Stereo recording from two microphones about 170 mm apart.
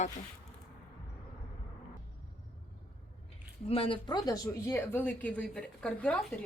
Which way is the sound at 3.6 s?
35° left (ahead or behind).